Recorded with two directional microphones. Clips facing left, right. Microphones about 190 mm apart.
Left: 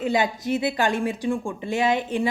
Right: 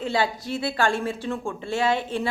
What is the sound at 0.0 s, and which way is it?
A woman's voice, 15° left (ahead or behind).